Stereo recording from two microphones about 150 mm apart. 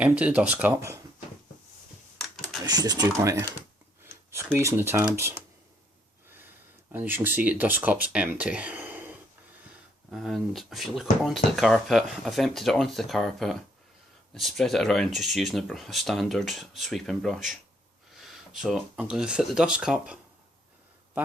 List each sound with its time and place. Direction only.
0.0 s speech: 10° right (ahead or behind)
2.1 s typing: centre (ahead or behind)
2.6 s speech: 25° right (ahead or behind)
4.0 s a sound: 20° right (ahead or behind)
4.5 s speech: 15° right (ahead or behind)
6.9 s speech: 15° right (ahead or behind)
10.1 s speech: centre (ahead or behind)